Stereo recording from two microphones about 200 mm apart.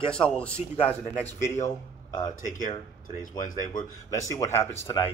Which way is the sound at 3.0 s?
40° left (ahead or behind).